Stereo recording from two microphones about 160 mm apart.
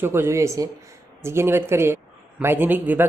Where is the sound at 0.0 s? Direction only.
15° right (ahead or behind).